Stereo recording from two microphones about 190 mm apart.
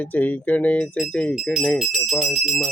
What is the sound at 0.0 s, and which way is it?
Speech, 10° left (ahead or behind).